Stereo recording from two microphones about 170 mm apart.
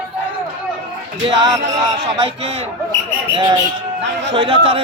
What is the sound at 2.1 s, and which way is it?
A man's voice, 30° right (ahead or behind).